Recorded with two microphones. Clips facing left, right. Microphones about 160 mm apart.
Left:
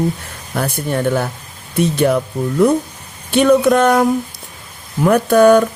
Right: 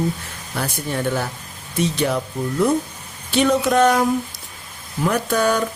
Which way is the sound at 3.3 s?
55° left (ahead or behind).